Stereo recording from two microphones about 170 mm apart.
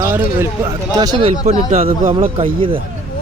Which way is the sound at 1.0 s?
25° right (ahead or behind).